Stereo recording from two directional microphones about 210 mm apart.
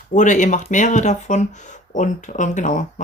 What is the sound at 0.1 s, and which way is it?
Speech, 35° left (ahead or behind).